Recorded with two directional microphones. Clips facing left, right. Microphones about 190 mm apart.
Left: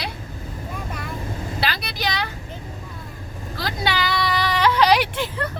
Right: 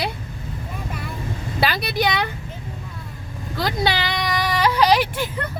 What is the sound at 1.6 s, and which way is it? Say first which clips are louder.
Speech: right 7 dB; 50° right (ahead or behind).